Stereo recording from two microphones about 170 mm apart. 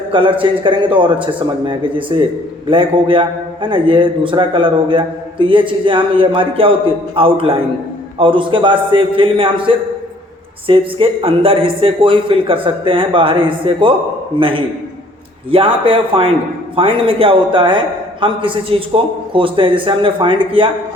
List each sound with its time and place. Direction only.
0.1 s a man's voice: 30° right (ahead or behind)